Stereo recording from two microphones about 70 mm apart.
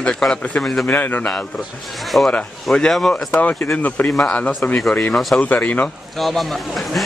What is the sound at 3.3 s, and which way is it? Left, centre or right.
A man's voice, left.